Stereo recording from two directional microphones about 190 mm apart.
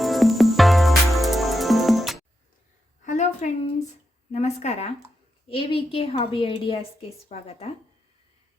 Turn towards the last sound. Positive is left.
turn(degrees=30)  # may be behind; listen again after turning